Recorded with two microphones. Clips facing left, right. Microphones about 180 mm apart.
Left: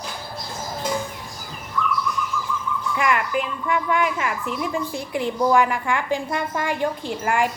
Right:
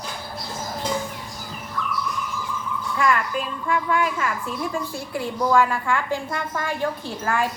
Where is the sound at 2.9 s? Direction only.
15° left (ahead or behind).